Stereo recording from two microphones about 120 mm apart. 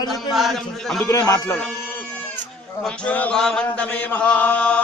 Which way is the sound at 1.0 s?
30° left (ahead or behind).